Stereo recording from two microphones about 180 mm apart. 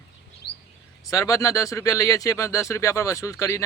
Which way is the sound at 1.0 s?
20° left (ahead or behind).